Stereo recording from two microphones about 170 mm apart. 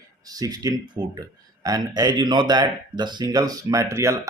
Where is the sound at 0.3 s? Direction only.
20° right (ahead or behind).